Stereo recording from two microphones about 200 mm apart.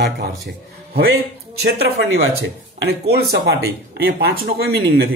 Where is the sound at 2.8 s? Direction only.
55° right (ahead or behind).